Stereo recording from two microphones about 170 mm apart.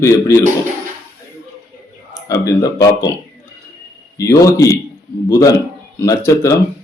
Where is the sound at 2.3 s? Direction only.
20° left (ahead or behind).